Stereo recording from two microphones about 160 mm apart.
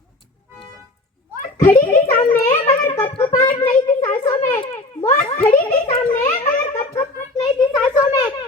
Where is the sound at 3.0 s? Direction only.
35° left (ahead or behind).